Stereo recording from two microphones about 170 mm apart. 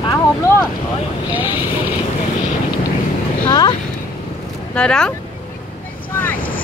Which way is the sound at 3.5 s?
25° left (ahead or behind).